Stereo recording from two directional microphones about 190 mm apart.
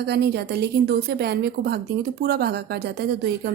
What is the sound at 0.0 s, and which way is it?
A woman's voice, 60° right (ahead or behind).